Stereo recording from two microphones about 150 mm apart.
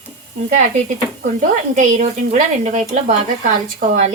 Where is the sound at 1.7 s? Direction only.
55° right (ahead or behind).